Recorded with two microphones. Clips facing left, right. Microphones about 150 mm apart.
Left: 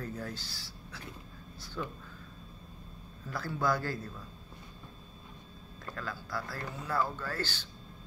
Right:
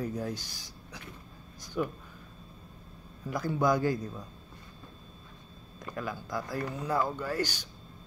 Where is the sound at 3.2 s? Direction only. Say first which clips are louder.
Right 5 dB; 15° right (ahead or behind).